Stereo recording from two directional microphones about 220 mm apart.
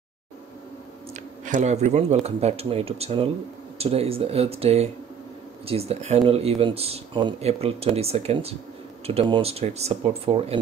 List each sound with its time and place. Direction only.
1.1 s speech: 35° right (ahead or behind)